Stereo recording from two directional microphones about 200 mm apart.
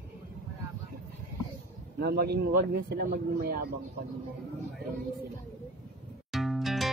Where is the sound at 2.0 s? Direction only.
50° right (ahead or behind).